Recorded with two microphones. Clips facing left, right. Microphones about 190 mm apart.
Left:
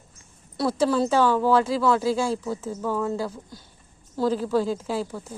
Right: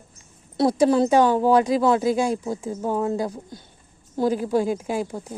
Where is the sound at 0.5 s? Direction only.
20° right (ahead or behind).